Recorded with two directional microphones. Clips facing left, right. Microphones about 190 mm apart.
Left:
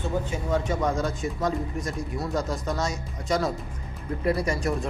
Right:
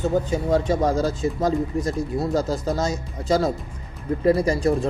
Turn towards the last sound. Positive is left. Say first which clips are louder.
# right 6 dB
turn(degrees=-30)  # may be behind; listen again after turning